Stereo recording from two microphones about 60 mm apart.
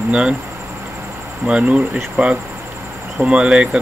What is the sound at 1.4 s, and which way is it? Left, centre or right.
Speech, centre.